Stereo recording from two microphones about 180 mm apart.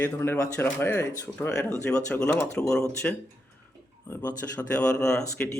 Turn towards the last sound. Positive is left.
turn(degrees=15)  # may be behind; listen again after turning